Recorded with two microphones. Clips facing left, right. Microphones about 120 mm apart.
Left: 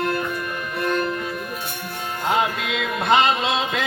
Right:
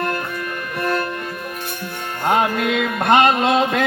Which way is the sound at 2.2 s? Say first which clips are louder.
Right 4 dB; 50° right (ahead or behind).